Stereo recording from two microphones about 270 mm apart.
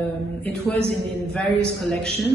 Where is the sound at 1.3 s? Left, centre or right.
Centre.